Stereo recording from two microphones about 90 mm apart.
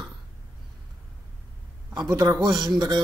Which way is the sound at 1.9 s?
45° right (ahead or behind).